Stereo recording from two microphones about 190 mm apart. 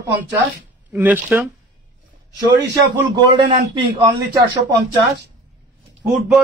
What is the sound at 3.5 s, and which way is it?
Speech, 25° right (ahead or behind).